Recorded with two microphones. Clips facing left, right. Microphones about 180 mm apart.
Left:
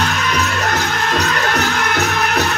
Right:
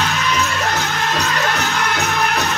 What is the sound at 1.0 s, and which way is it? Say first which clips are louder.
Music: left 1 dB; 50° left (ahead or behind).